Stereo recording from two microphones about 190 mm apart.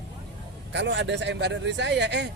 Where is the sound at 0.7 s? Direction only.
65° right (ahead or behind).